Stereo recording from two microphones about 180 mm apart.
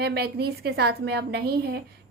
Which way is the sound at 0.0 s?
65° right (ahead or behind).